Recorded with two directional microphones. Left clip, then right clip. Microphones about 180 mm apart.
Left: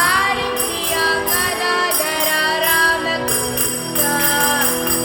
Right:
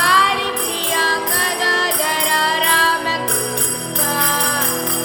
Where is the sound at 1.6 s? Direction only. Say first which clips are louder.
Right 1 dB; 25° right (ahead or behind).